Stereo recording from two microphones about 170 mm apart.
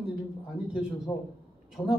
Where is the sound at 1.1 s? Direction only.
20° left (ahead or behind).